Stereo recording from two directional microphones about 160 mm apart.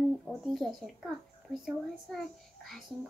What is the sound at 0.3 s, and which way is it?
Speech, centre (ahead or behind).